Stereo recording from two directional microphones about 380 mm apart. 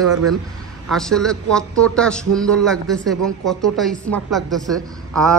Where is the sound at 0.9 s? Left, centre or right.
Centre.